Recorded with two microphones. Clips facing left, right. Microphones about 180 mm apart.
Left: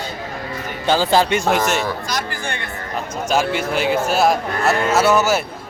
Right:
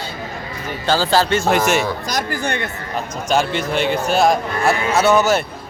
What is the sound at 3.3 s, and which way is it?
A man's voice, 5° left (ahead or behind).